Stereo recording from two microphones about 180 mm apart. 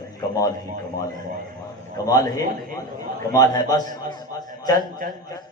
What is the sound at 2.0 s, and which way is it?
Speech, 20° left (ahead or behind).